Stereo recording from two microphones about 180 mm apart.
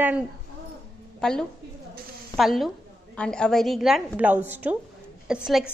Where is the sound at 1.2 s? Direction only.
5° left (ahead or behind).